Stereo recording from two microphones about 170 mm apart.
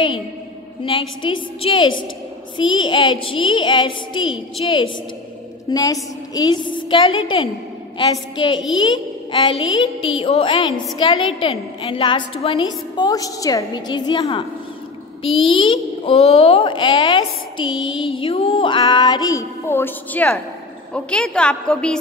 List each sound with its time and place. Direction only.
0.8 s a child's voice: 30° left (ahead or behind)
15.5 s a woman's voice: 30° left (ahead or behind); by 21.9 s 5° left (ahead or behind)